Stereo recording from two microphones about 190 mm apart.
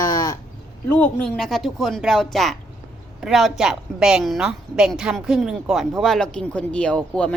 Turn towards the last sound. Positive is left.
turn(degrees=5)  # may be behind; listen again after turning